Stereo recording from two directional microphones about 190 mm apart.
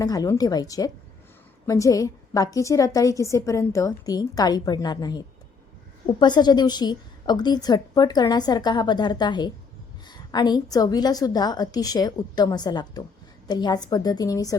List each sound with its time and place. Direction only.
0.0 s a woman's voice: 20° left (ahead or behind)